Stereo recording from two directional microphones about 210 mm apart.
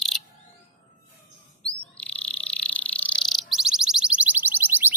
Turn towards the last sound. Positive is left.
turn(degrees=-10)  # may be behind; listen again after turning